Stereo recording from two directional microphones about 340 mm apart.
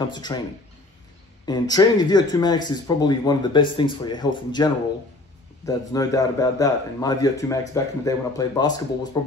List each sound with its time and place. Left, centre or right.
0.1 s a man's voice: centre
1.4 s a man's voice: centre
5.7 s a man's voice: centre